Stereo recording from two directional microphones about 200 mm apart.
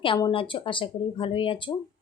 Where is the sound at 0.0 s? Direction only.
25° left (ahead or behind).